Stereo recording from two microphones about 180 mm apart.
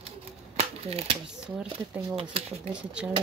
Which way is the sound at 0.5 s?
35° right (ahead or behind).